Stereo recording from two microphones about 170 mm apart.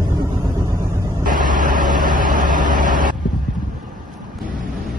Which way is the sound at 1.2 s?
50° right (ahead or behind).